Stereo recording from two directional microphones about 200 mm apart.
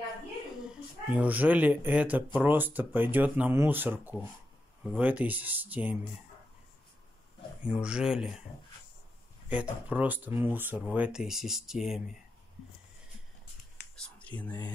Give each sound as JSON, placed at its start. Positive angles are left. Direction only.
{"t": 1.1, "sound": "speech", "side_deg": -10}
{"t": 7.6, "sound": "speech", "side_deg": -5}
{"t": 9.5, "sound": "speech", "side_deg": -5}
{"t": 13.8, "sound": "whispering", "side_deg": 55}
{"t": 14.1, "sound": "a sound", "side_deg": 5}